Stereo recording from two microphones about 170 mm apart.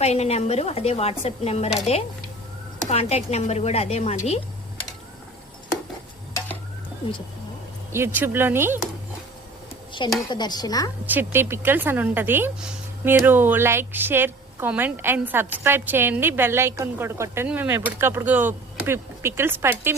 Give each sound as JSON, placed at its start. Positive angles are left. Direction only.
{"t": 0.0, "sound": "speech", "side_deg": 40}
{"t": 2.9, "sound": "speech", "side_deg": 40}
{"t": 7.9, "sound": "speech", "side_deg": -15}
{"t": 10.0, "sound": "stir", "side_deg": 30}
{"t": 11.0, "sound": "speech", "side_deg": -10}